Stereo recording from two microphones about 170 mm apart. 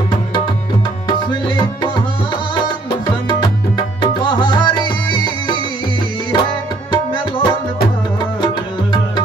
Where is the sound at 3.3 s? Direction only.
25° left (ahead or behind).